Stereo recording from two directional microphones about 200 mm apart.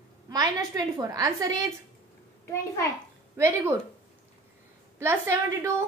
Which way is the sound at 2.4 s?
15° left (ahead or behind).